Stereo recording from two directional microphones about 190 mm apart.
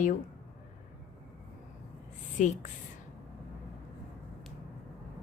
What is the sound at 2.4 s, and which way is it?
Speech, 40° left (ahead or behind).